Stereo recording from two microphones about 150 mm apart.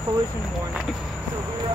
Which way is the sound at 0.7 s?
5° right (ahead or behind).